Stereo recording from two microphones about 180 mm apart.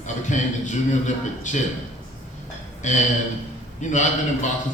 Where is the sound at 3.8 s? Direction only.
45° left (ahead or behind).